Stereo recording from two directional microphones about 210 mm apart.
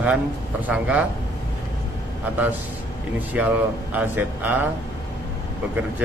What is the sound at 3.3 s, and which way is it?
Speech, 5° right (ahead or behind).